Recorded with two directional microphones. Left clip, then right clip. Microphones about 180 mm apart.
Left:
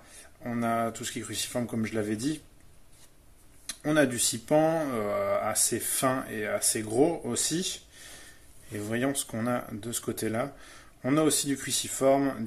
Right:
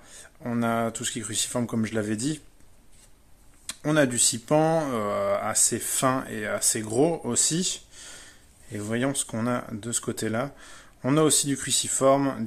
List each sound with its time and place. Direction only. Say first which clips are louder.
0.4 s speech: right 2 dB; 35° right (ahead or behind)
3.6 s speech: right 2 dB; 30° right (ahead or behind)